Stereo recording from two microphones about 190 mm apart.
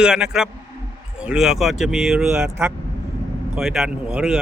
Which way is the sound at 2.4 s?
15° right (ahead or behind).